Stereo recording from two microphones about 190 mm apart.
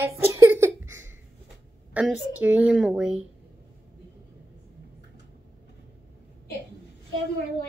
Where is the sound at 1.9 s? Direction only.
5° right (ahead or behind).